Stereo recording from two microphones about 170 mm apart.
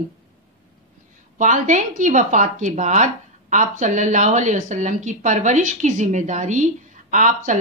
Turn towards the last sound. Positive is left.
turn(degrees=-50)  # may be behind; listen again after turning